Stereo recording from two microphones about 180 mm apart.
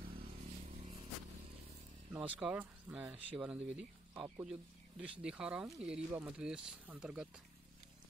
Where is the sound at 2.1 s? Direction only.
5° right (ahead or behind).